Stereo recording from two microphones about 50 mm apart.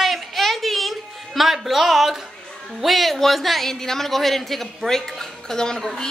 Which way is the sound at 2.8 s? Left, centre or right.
Centre.